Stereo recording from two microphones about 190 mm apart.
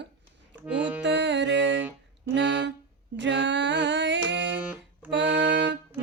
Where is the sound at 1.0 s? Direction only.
70° right (ahead or behind).